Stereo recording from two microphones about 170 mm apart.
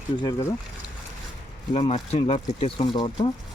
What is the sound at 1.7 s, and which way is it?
Speech, 35° left (ahead or behind).